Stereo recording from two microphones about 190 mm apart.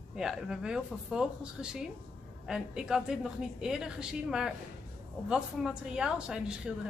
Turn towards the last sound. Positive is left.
turn(degrees=-5)  # may be behind; listen again after turning